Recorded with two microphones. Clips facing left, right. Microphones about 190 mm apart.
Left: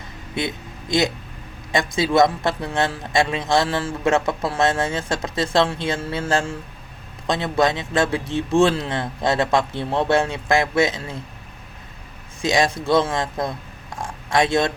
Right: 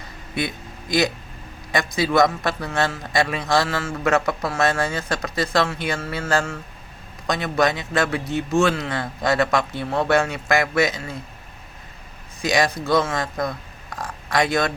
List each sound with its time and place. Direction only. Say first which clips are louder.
0.3 s a man's voice: even; 25° left (ahead or behind)
12.4 s a man's voice: left 1 dB; 25° left (ahead or behind)